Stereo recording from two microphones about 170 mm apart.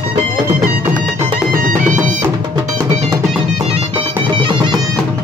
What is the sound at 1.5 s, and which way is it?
Music, 50° right (ahead or behind).